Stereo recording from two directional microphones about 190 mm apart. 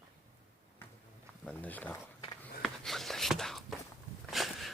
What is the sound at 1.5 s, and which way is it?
Speech, 10° left (ahead or behind).